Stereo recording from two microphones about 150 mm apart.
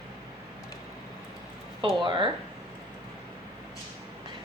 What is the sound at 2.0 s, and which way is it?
Speech, 30° right (ahead or behind).